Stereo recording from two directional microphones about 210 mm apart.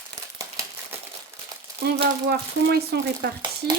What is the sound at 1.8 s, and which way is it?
Speech, 50° right (ahead or behind).